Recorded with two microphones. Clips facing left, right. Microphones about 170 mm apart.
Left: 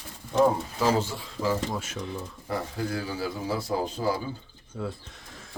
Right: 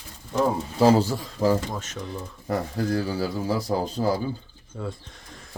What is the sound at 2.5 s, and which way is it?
A man's voice, 40° right (ahead or behind).